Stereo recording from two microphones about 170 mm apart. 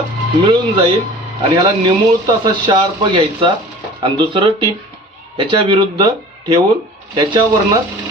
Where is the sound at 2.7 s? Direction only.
30° right (ahead or behind).